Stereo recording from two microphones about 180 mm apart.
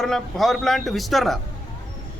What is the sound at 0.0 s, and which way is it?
A man's voice, centre (ahead or behind).